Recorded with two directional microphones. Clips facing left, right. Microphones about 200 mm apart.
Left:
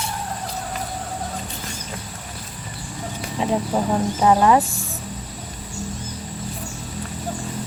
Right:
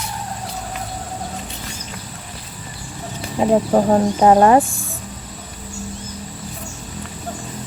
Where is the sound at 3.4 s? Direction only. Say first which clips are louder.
Right 6 dB; 50° right (ahead or behind).